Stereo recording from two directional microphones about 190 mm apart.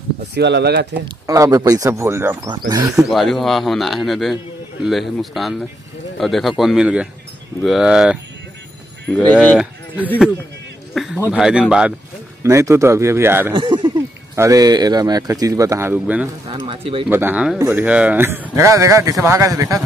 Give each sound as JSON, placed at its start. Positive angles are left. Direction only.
{"t": 0.3, "sound": "speech", "side_deg": -60}
{"t": 1.0, "sound": "a man's voice", "side_deg": -20}
{"t": 3.0, "sound": "speech", "side_deg": 0}
{"t": 9.1, "sound": "speech", "side_deg": 5}
{"t": 10.9, "sound": "a sound", "side_deg": 0}
{"t": 11.3, "sound": "speech", "side_deg": -5}
{"t": 12.4, "sound": "a man's voice", "side_deg": -15}
{"t": 13.5, "sound": "a man's voice", "side_deg": -25}
{"t": 16.4, "sound": "speech", "side_deg": -30}
{"t": 17.1, "sound": "a man's voice", "side_deg": -10}